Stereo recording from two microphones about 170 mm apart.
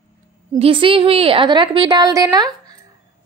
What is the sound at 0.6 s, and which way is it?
A woman's voice, 30° right (ahead or behind).